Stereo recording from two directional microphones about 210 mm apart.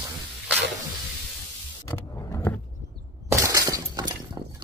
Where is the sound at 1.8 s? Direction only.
15° left (ahead or behind).